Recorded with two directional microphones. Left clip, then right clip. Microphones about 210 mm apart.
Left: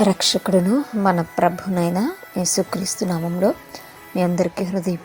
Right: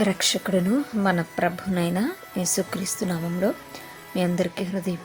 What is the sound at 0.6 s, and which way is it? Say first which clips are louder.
Speech: left 5 dB; centre (ahead or behind).